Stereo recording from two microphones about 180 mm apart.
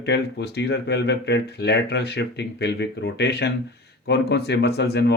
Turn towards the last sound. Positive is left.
turn(degrees=70)  # may be behind; listen again after turning